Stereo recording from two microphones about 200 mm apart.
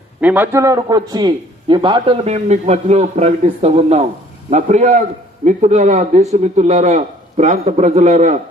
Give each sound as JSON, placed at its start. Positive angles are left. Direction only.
{"t": 0.2, "sound": "a man's voice", "side_deg": -10}